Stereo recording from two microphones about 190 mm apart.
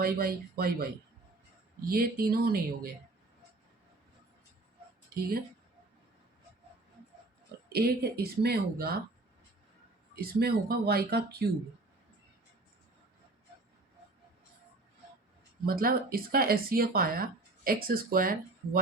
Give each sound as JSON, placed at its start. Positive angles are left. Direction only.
{"t": 0.0, "sound": "speech", "side_deg": -50}
{"t": 1.9, "sound": "speech", "side_deg": -50}
{"t": 7.7, "sound": "speech", "side_deg": -55}
{"t": 10.2, "sound": "speech", "side_deg": -55}
{"t": 15.6, "sound": "speech", "side_deg": -50}